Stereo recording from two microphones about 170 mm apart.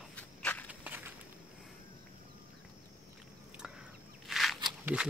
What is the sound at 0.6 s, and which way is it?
Walk, 10° right (ahead or behind).